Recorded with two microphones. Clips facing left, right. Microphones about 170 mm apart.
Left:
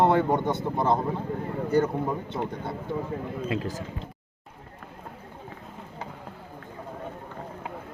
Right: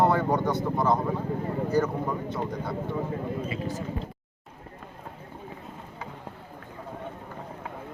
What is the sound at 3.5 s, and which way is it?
Speech, 90° left.